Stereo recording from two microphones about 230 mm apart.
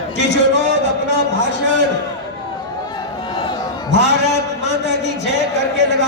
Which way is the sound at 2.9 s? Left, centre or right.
Left.